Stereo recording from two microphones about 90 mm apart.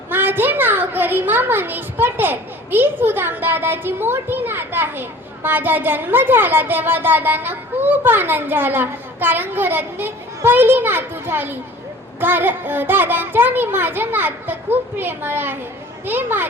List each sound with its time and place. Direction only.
0.1 s a child's voice: 25° right (ahead or behind)